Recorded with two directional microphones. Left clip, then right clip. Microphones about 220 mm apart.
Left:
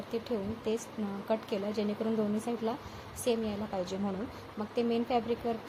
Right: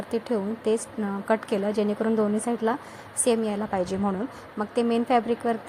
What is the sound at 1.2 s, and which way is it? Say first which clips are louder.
A woman's voice: right 8 dB; 25° right (ahead or behind).